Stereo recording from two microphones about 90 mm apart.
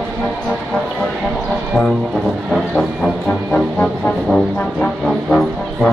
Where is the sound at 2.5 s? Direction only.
Centre (ahead or behind).